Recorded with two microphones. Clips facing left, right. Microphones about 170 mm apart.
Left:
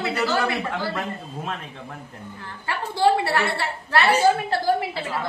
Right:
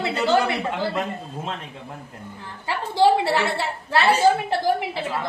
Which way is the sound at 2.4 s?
15° right (ahead or behind).